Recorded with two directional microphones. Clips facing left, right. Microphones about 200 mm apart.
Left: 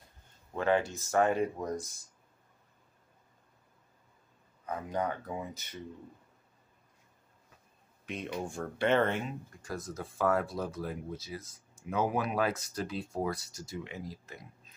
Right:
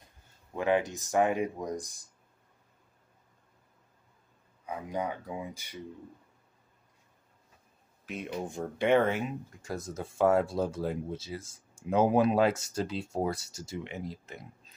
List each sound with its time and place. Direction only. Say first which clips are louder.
0.6 s speech: right 1 dB; 15° right (ahead or behind)
4.6 s speech: even; 10° right (ahead or behind)
8.0 s a sound: even; 5° right (ahead or behind)
8.5 s speech: right 3 dB; 15° right (ahead or behind)
9.6 s speech: right 2 dB; 25° right (ahead or behind)